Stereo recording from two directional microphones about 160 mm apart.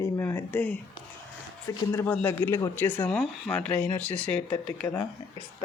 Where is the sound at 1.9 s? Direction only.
10° left (ahead or behind).